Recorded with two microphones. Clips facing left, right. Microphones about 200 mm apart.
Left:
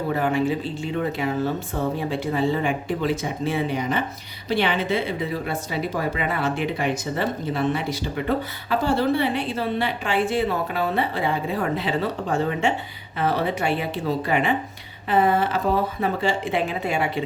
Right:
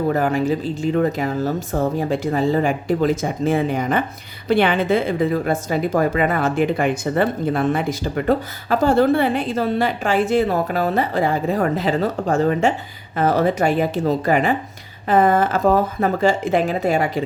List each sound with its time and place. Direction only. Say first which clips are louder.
0.1 s speech: right 3 dB; 40° right (ahead or behind)